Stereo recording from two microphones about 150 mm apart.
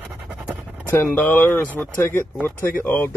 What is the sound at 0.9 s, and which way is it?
Speech, 15° left (ahead or behind).